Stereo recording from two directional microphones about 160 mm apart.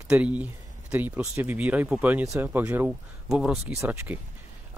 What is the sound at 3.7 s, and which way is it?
Speech, 15° right (ahead or behind).